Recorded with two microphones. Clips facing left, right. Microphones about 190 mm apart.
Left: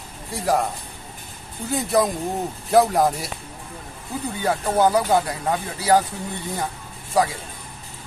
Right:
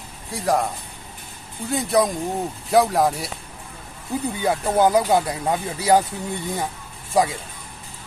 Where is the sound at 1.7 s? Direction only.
Centre (ahead or behind).